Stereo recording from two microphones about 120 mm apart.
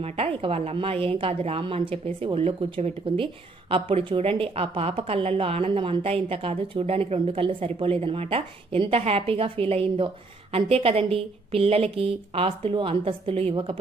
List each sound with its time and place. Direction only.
0.0 s a woman's voice: 55° right (ahead or behind)